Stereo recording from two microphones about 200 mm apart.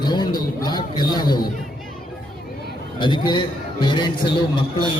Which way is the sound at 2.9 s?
25° left (ahead or behind).